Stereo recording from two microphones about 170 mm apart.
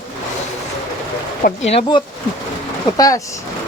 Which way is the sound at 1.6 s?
35° left (ahead or behind).